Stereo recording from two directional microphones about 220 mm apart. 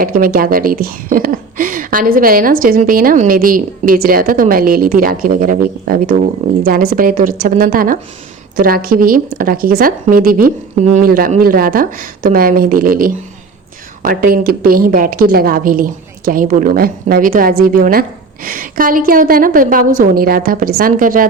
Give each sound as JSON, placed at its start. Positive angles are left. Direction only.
{"t": 0.0, "sound": "a woman's voice", "side_deg": -40}